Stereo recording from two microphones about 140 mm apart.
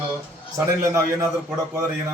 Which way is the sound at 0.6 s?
20° right (ahead or behind).